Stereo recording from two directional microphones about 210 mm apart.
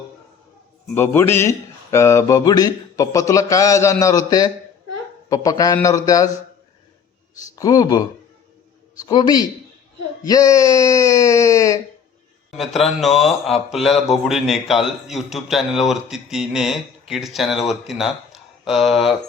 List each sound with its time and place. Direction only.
0.9 s a man's voice: 10° left (ahead or behind)
7.5 s a man's voice: 15° left (ahead or behind)
12.5 s speech: centre (ahead or behind)